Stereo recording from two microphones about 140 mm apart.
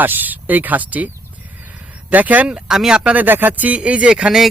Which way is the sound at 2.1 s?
10° right (ahead or behind).